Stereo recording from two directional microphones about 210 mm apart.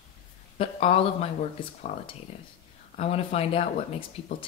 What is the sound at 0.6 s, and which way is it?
Speech, 25° left (ahead or behind).